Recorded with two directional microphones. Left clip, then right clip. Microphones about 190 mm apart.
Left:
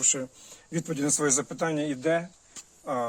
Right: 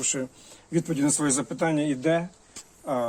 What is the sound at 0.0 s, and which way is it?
Speech, 30° left (ahead or behind).